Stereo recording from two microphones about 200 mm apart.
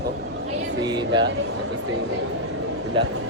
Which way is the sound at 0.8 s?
20° right (ahead or behind).